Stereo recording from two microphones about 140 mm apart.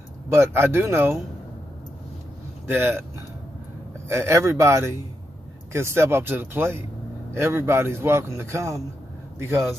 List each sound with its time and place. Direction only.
0.3 s a man's voice: 20° right (ahead or behind)
2.6 s speech: 15° right (ahead or behind)
4.1 s a man's voice: 20° right (ahead or behind)